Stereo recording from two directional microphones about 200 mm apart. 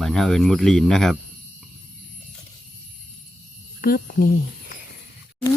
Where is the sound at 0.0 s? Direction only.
Centre (ahead or behind).